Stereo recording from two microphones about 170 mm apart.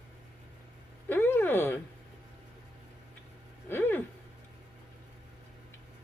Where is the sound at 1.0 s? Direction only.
15° left (ahead or behind).